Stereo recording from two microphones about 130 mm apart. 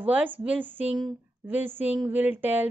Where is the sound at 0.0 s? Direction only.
15° right (ahead or behind).